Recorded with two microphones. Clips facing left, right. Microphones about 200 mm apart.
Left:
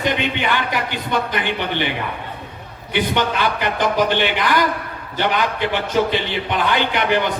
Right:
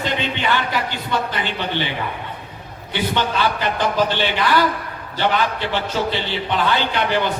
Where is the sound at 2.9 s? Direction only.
15° left (ahead or behind).